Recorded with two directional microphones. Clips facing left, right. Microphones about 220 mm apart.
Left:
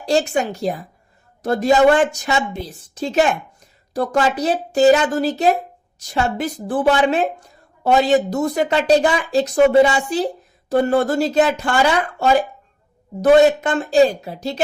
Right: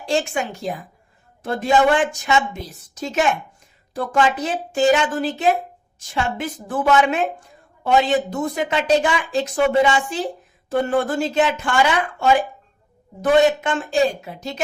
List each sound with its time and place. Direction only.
0.0 s speech: 40° left (ahead or behind)